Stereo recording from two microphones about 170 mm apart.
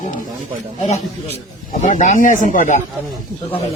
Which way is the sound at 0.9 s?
40° left (ahead or behind).